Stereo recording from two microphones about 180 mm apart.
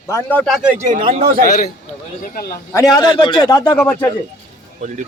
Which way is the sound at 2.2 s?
55° left (ahead or behind).